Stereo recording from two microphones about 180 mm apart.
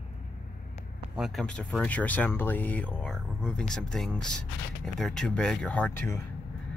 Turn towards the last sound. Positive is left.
turn(degrees=10)  # may be behind; listen again after turning